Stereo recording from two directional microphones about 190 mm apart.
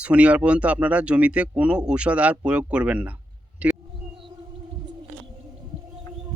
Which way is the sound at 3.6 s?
5° right (ahead or behind).